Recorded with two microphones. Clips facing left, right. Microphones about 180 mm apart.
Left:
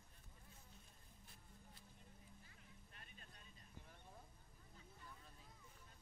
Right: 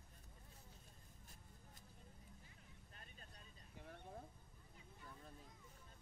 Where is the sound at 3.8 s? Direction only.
60° right (ahead or behind).